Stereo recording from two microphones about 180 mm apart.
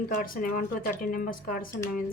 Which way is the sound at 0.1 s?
50° left (ahead or behind).